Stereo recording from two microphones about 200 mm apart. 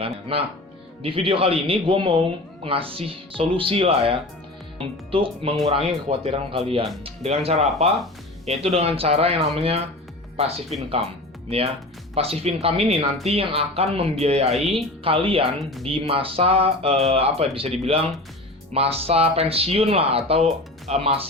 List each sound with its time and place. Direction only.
0.3 s speech: 30° right (ahead or behind)
15.5 s speech: centre (ahead or behind)
15.9 s speech: 30° right (ahead or behind)